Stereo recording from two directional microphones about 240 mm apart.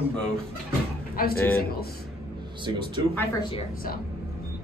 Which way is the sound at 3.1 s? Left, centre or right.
Centre.